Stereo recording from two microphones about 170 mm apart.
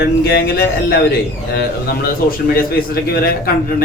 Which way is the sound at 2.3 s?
60° left (ahead or behind).